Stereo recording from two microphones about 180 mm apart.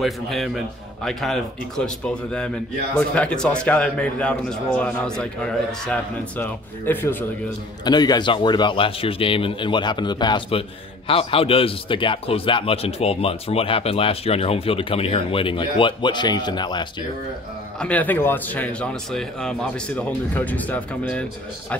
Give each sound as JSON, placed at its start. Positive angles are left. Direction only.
{"t": 0.0, "sound": "a man's voice", "side_deg": 0}
{"t": 7.8, "sound": "a man's voice", "side_deg": 20}
{"t": 17.7, "sound": "speech", "side_deg": 10}